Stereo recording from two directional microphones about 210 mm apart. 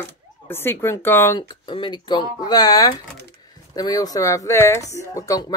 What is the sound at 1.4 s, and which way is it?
Speech, 20° left (ahead or behind).